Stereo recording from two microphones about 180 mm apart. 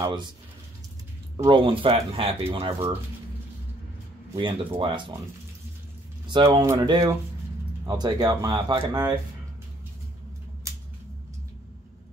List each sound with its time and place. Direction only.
0.0 s speech: 25° right (ahead or behind)
1.3 s speech: 30° right (ahead or behind)
4.4 s speech: 30° right (ahead or behind)
6.2 s speech: 25° right (ahead or behind)